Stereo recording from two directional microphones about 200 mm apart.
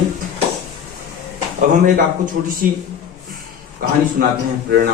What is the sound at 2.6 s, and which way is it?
Speech, 45° right (ahead or behind).